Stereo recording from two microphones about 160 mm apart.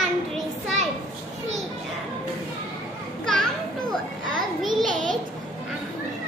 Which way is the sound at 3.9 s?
Centre (ahead or behind).